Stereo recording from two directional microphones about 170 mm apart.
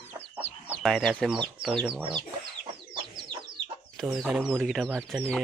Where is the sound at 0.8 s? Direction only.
Centre (ahead or behind).